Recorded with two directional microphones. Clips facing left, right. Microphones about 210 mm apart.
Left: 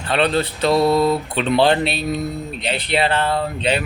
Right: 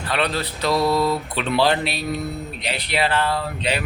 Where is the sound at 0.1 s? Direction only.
25° left (ahead or behind).